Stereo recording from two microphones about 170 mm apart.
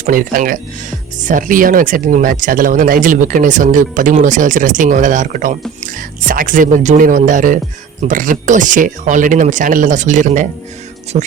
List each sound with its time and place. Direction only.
0.0 s speech: 55° right (ahead or behind)